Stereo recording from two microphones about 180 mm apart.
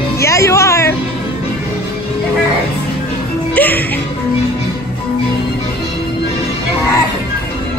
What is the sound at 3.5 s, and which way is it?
Music, 10° left (ahead or behind).